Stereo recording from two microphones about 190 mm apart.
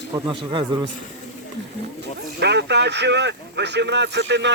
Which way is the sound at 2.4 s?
60° right (ahead or behind).